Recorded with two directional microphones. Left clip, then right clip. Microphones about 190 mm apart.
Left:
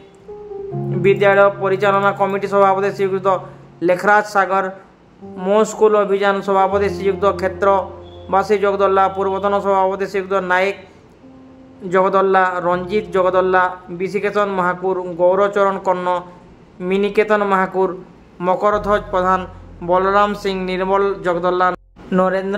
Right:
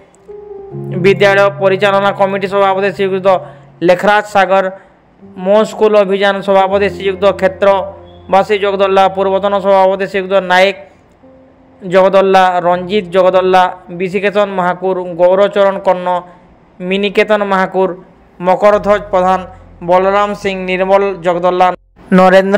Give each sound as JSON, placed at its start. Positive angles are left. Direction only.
{"t": 0.9, "sound": "a man's voice", "side_deg": -20}
{"t": 11.9, "sound": "a man's voice", "side_deg": -15}
{"t": 16.8, "sound": "a man's voice", "side_deg": -15}
{"t": 18.4, "sound": "a man's voice", "side_deg": -15}
{"t": 22.1, "sound": "a man's voice", "side_deg": -40}